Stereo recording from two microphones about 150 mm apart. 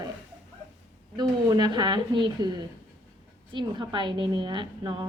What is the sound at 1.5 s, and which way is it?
A woman's voice, 30° right (ahead or behind).